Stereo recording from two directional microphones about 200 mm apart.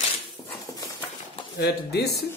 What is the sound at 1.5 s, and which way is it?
Speech, 55° left (ahead or behind).